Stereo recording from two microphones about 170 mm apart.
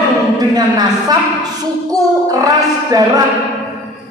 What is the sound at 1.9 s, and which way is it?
Speech, 20° right (ahead or behind).